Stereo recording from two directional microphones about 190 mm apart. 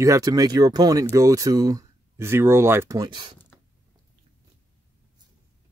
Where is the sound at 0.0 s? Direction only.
20° right (ahead or behind).